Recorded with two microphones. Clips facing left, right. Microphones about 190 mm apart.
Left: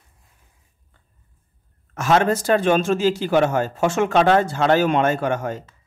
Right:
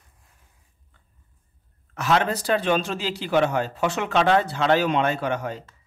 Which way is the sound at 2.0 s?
45° left (ahead or behind).